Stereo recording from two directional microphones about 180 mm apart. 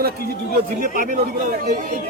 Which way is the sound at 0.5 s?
50° right (ahead or behind).